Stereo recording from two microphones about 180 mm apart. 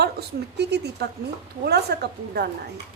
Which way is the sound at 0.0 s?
65° right (ahead or behind).